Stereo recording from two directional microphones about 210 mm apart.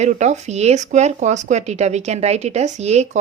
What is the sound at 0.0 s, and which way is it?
A woman's voice, 35° right (ahead or behind).